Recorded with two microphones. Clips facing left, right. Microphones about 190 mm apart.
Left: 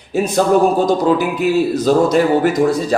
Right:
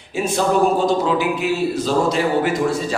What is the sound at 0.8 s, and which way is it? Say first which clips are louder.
A man's voice: left 4 dB; 40° left (ahead or behind).